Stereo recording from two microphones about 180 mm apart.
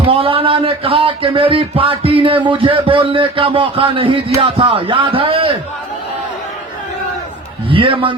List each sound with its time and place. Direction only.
0.1 s speech: 30° right (ahead or behind)
7.7 s a man's voice: 30° right (ahead or behind)